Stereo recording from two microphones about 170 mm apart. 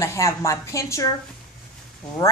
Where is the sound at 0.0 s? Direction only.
15° left (ahead or behind).